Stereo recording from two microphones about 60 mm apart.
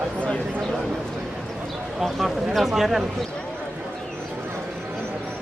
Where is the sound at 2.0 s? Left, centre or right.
Centre.